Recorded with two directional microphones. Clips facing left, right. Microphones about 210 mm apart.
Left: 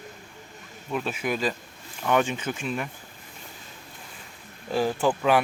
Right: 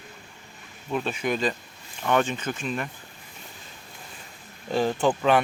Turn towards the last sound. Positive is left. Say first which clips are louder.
# right 1 dB
turn(degrees=5)  # may be behind; listen again after turning